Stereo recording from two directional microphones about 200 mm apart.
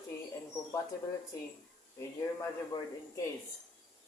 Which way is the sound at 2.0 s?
15° left (ahead or behind).